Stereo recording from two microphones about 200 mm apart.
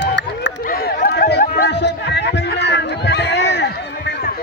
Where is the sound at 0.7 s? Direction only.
45° left (ahead or behind).